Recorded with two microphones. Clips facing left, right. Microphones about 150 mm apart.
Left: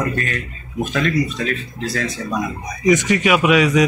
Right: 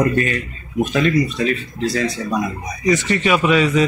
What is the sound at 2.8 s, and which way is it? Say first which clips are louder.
Speech: left 2 dB; 15° left (ahead or behind).